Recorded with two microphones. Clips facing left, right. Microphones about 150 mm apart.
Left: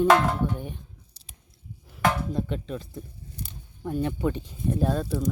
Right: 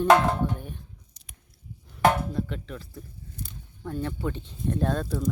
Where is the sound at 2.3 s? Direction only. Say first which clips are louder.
Left 2 dB; 20° left (ahead or behind).